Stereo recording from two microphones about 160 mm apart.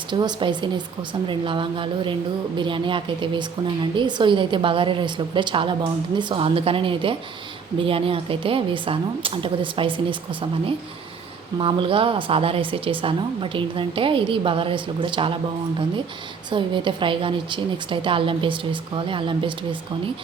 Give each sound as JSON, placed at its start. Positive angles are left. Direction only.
{"t": 0.1, "sound": "a woman's voice", "side_deg": -30}
{"t": 16.5, "sound": "a woman's voice", "side_deg": -30}